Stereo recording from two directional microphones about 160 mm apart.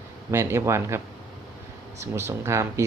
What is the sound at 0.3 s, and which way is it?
Speech, 15° right (ahead or behind).